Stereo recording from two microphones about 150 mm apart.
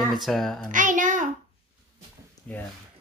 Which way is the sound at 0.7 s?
60° right (ahead or behind).